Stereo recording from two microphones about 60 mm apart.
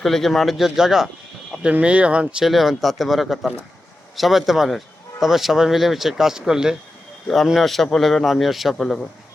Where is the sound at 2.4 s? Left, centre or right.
Centre.